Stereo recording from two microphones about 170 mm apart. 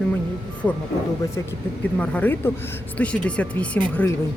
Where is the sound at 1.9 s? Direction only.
10° left (ahead or behind).